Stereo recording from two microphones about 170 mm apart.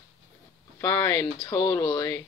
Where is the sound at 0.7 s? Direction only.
15° left (ahead or behind).